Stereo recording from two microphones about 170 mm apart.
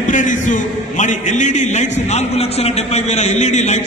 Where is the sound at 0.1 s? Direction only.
50° left (ahead or behind).